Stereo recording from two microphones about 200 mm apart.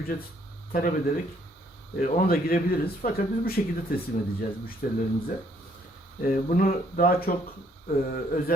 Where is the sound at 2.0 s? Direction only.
45° left (ahead or behind).